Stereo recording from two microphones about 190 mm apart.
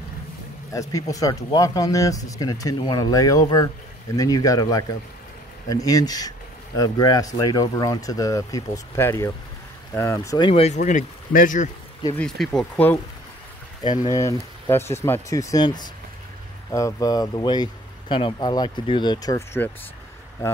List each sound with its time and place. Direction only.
0.7 s speech: 15° left (ahead or behind); by 11.7 s 45° left (ahead or behind)
12.2 s speech: centre (ahead or behind)
13.8 s speech: 20° left (ahead or behind)